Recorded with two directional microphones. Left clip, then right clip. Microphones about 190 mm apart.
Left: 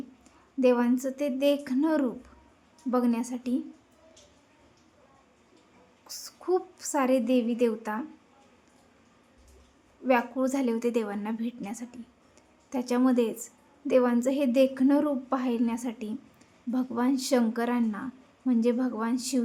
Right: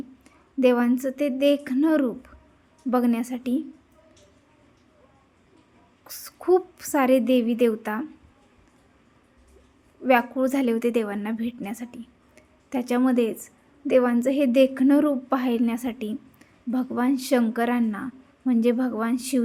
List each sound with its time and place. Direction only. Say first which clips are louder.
0.6 s a woman's voice: right 3 dB; 20° right (ahead or behind)
6.1 s a woman's voice: right 7 dB; 20° right (ahead or behind)
10.0 s a woman's voice: right 5 dB; 20° right (ahead or behind)